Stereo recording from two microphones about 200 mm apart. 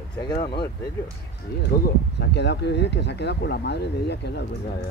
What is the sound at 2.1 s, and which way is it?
Speech, 60° left (ahead or behind).